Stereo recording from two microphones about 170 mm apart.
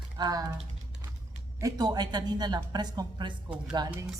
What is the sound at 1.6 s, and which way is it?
A man's voice, 20° right (ahead or behind).